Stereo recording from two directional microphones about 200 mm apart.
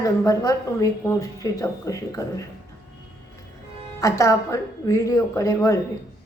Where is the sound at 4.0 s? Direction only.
15° left (ahead or behind).